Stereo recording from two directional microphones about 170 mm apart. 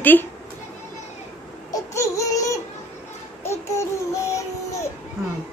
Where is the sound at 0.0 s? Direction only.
10° left (ahead or behind).